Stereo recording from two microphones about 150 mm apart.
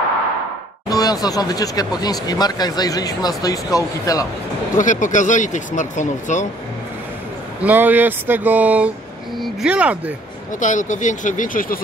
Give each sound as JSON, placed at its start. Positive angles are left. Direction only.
{"t": 0.8, "sound": "speech", "side_deg": 25}
{"t": 4.7, "sound": "speech", "side_deg": 60}
{"t": 7.6, "sound": "speech", "side_deg": -10}
{"t": 10.6, "sound": "speech", "side_deg": 55}